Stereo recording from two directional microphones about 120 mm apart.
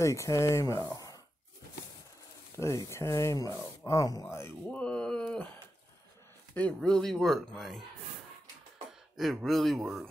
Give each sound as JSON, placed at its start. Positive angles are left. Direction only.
{"t": 0.0, "sound": "speech", "side_deg": 25}
{"t": 2.5, "sound": "speech", "side_deg": 25}
{"t": 4.6, "sound": "speech", "side_deg": 10}
{"t": 9.1, "sound": "speech", "side_deg": 0}